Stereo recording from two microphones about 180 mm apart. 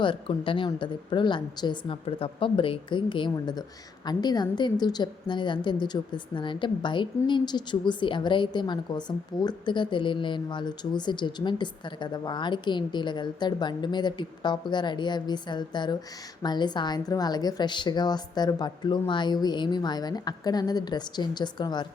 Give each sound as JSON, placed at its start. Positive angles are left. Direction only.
{"t": 0.0, "sound": "a woman's voice", "side_deg": 30}